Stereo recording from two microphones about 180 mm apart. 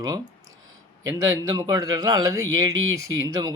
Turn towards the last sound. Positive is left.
turn(degrees=-20)  # may be behind; listen again after turning